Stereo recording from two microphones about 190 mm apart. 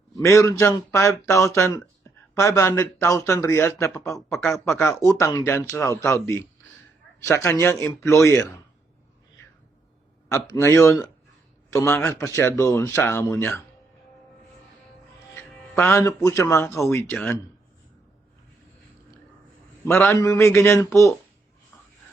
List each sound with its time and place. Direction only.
0.2 s speech: 15° left (ahead or behind)
4.3 s a man's voice: centre (ahead or behind)
4.6 s speech: 15° left (ahead or behind)
10.5 s speech: 15° left (ahead or behind)
15.4 s speech: 10° left (ahead or behind)
19.8 s speech: 10° left (ahead or behind)